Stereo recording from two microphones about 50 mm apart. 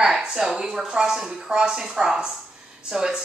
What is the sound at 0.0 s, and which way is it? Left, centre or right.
A woman's voice, centre.